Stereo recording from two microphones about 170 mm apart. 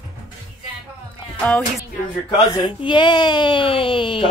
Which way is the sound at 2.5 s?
25° left (ahead or behind).